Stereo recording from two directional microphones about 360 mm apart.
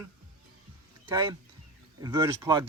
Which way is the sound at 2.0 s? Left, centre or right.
Centre.